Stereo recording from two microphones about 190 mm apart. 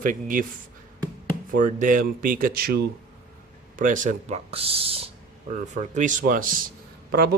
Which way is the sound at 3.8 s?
45° right (ahead or behind).